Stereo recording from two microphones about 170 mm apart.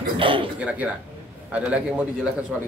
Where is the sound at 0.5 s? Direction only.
10° right (ahead or behind).